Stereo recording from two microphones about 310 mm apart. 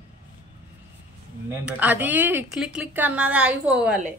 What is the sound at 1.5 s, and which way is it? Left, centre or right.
A woman's voice, centre.